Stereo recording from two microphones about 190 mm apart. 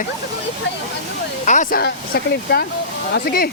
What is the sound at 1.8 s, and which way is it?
Speech, 60° left (ahead or behind).